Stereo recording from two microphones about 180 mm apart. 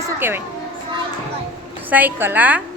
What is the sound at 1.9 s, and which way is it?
Speech, 10° right (ahead or behind).